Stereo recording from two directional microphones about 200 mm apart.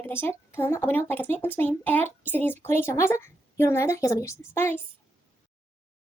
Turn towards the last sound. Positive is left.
turn(degrees=10)  # may be behind; listen again after turning